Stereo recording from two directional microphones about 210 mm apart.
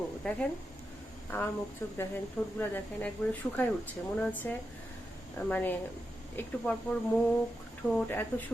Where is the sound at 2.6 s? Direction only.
10° left (ahead or behind).